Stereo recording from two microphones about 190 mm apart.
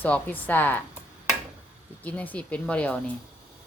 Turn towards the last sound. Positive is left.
turn(degrees=5)  # may be behind; listen again after turning